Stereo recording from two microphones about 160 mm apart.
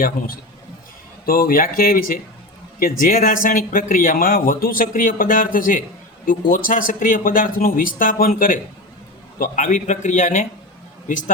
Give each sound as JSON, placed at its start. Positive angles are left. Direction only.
{"t": 1.2, "sound": "a man's voice", "side_deg": 65}